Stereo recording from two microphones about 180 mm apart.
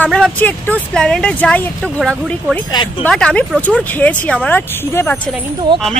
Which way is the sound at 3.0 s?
5° left (ahead or behind).